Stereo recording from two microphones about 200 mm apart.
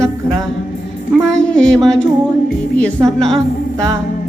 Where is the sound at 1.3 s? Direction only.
5° left (ahead or behind).